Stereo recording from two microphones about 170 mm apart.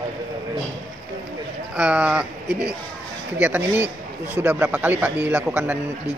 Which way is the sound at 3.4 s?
10° right (ahead or behind).